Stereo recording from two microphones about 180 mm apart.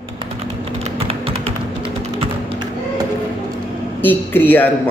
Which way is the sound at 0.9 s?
30° right (ahead or behind).